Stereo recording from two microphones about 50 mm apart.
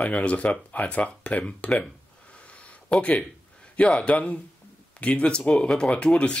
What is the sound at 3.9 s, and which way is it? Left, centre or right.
Speech, left.